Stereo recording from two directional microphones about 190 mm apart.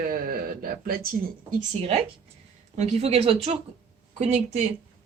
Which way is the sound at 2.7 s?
35° right (ahead or behind).